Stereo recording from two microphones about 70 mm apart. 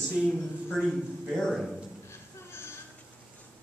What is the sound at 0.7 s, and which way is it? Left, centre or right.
A man's voice, centre.